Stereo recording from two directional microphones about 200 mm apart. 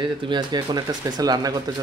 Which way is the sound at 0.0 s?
25° right (ahead or behind).